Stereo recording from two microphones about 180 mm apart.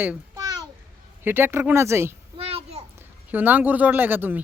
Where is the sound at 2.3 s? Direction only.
30° right (ahead or behind).